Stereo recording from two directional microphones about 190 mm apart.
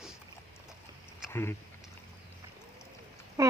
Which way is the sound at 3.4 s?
15° right (ahead or behind).